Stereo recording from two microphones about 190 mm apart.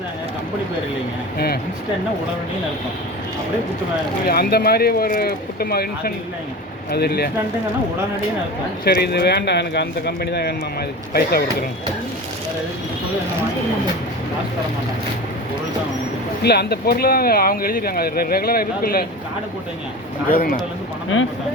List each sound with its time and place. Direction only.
4.3 s speech: 55° left (ahead or behind)
8.8 s speech: 55° left (ahead or behind)
16.4 s speech: 60° left (ahead or behind)
20.3 s speech: 50° left (ahead or behind)
21.1 s speech: 90° left